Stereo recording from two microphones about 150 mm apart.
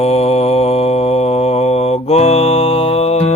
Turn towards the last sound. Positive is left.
turn(degrees=45)  # may be behind; listen again after turning